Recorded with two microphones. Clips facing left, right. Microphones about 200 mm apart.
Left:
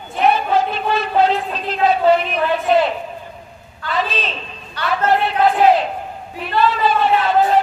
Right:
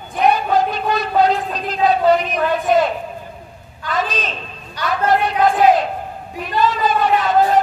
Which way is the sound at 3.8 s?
45° right (ahead or behind).